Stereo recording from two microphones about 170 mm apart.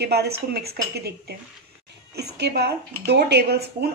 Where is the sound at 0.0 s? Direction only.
70° right (ahead or behind).